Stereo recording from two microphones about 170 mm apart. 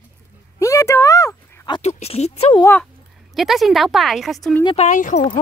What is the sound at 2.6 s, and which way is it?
A woman's voice, 5° left (ahead or behind).